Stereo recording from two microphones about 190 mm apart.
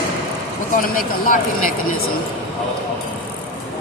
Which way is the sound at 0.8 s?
45° left (ahead or behind).